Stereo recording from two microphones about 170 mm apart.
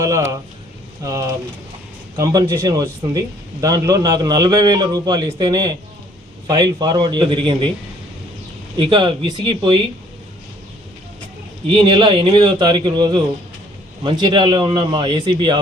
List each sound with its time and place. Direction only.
0.0 s speech: 20° right (ahead or behind)
8.8 s speech: 30° right (ahead or behind)
11.7 s speech: 30° right (ahead or behind)